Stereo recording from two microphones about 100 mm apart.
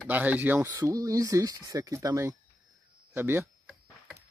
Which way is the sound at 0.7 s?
35° right (ahead or behind).